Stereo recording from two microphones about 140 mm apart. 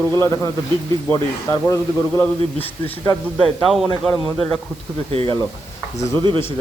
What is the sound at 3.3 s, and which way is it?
A man's voice, centre (ahead or behind).